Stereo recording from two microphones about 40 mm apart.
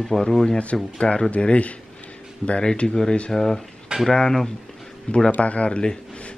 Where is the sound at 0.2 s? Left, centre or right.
Centre.